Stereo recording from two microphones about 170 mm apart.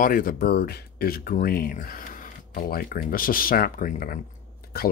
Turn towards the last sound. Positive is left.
turn(degrees=60)  # may be behind; listen again after turning